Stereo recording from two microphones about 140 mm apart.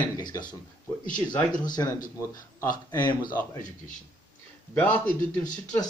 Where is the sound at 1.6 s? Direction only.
30° left (ahead or behind).